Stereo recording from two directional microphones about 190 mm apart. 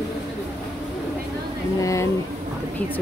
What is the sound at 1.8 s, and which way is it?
Speech, 15° left (ahead or behind).